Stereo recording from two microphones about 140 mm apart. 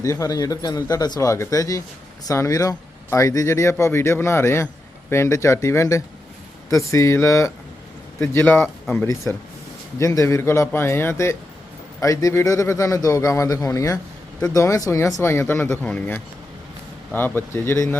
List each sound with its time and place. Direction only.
0.0 s speech: 25° left (ahead or behind)